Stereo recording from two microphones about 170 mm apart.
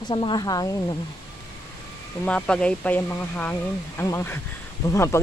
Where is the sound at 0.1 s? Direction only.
25° left (ahead or behind).